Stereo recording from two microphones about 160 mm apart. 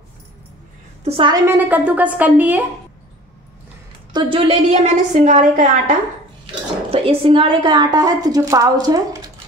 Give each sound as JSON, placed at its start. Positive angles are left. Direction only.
{"t": 1.0, "sound": "a woman's voice", "side_deg": -35}
{"t": 1.3, "sound": "a woman's voice", "side_deg": -15}
{"t": 4.1, "sound": "a woman's voice", "side_deg": -30}
{"t": 6.4, "sound": "speech", "side_deg": -35}